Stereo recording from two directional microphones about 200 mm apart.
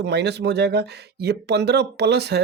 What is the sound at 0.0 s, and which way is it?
Speech, 55° right (ahead or behind).